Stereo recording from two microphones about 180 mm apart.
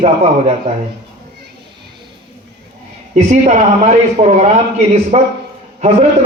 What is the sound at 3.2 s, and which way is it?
Speech, 45° right (ahead or behind).